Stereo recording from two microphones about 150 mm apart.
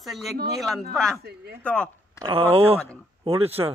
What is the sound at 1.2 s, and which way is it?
Speech, 90° right.